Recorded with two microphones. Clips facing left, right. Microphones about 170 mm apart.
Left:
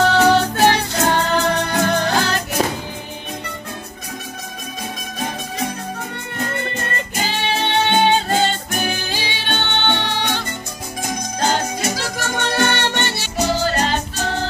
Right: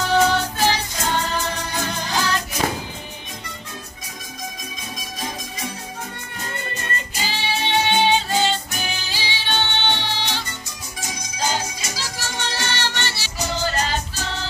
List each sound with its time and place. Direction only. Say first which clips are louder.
0.2 s music: left 5 dB; 60° left (ahead or behind)
6.4 s music: left 7 dB; 55° left (ahead or behind)